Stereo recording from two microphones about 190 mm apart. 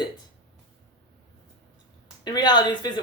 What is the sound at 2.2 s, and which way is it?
Speech, 20° left (ahead or behind).